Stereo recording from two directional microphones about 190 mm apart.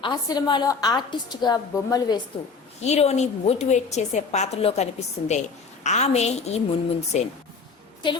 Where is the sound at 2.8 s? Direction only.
35° left (ahead or behind).